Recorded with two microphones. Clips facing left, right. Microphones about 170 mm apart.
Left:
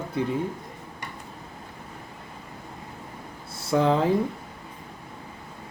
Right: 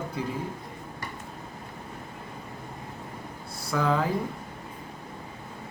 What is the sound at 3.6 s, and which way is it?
Speech, 25° left (ahead or behind).